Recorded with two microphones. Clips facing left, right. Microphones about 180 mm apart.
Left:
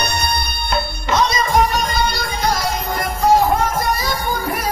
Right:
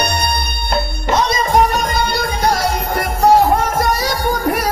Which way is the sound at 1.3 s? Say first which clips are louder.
Right 2 dB; 55° right (ahead or behind).